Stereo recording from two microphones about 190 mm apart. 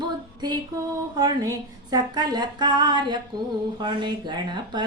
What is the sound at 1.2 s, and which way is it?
Speech, 20° right (ahead or behind).